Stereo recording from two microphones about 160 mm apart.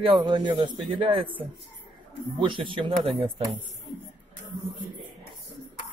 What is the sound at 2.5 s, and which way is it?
Speech, 30° right (ahead or behind).